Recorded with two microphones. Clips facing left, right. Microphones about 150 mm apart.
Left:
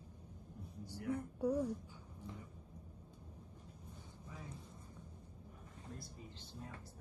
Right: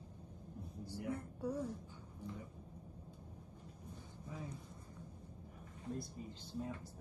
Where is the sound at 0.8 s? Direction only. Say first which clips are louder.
Left 2 dB; 15° left (ahead or behind).